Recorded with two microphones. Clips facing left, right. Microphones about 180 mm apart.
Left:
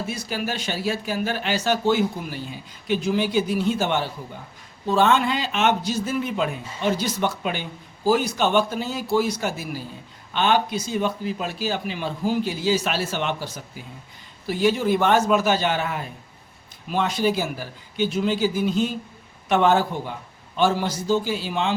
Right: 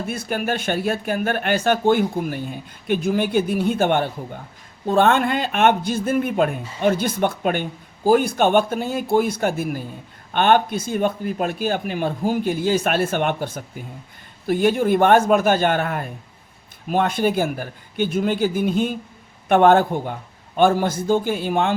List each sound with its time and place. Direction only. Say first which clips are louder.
0.0 s speech: right 3 dB; 55° right (ahead or behind)